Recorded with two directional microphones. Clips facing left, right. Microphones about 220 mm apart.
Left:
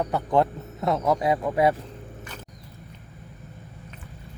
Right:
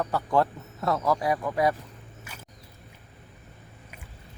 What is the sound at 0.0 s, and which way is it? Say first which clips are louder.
Speech: left 2 dB; 20° left (ahead or behind).